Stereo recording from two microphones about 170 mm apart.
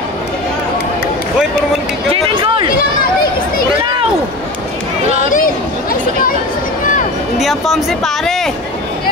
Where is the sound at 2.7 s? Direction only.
60° left (ahead or behind).